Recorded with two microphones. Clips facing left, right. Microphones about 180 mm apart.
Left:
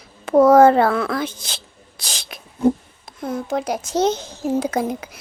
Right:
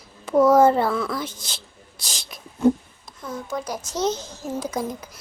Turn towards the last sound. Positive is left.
turn(degrees=60)  # may be behind; listen again after turning